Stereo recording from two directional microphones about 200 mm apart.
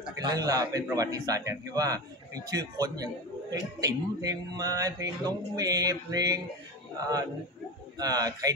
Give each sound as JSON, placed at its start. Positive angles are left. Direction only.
{"t": 0.2, "sound": "a man's voice", "side_deg": -20}
{"t": 8.0, "sound": "a man's voice", "side_deg": -20}